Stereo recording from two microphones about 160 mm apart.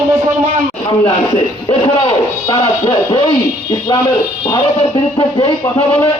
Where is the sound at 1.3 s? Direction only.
30° left (ahead or behind).